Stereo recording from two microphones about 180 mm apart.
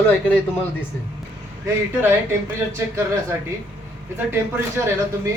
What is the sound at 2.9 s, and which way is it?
A man's voice, 15° right (ahead or behind).